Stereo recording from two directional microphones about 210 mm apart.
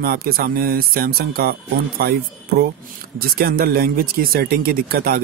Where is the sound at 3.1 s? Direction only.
45° right (ahead or behind).